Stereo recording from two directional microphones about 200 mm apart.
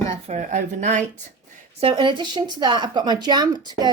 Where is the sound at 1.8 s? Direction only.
25° right (ahead or behind).